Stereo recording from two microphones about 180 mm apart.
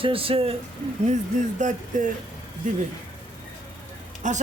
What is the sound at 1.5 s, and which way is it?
Speech, 45° right (ahead or behind).